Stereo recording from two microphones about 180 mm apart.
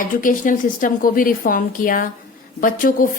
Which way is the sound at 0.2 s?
50° left (ahead or behind).